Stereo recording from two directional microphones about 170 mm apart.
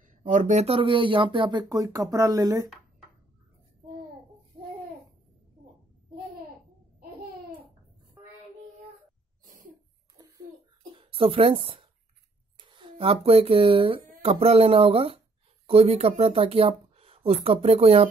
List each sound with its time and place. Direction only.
0.2 s speech: 50° right (ahead or behind); by 2.6 s 20° right (ahead or behind)
10.2 s a sound: 20° right (ahead or behind)
11.0 s speech: 30° right (ahead or behind)